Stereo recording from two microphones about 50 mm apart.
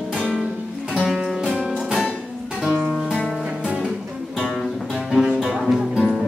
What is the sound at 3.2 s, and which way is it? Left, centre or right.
Music, centre.